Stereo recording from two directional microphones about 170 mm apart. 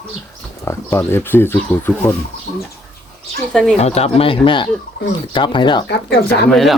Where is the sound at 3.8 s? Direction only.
40° left (ahead or behind).